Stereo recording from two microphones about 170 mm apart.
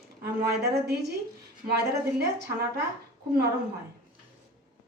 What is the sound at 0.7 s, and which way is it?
A woman's voice, 75° right (ahead or behind).